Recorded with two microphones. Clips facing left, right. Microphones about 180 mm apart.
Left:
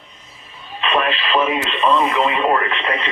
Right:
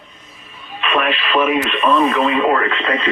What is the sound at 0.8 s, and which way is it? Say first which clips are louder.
Speech: right 1 dB; 30° left (ahead or behind).